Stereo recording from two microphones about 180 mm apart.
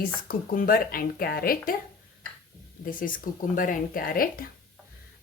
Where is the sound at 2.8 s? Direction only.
50° left (ahead or behind).